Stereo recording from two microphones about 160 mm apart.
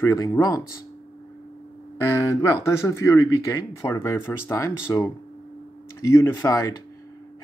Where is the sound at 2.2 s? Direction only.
15° left (ahead or behind).